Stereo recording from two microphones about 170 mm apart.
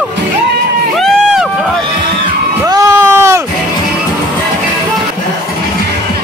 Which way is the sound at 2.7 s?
20° right (ahead or behind).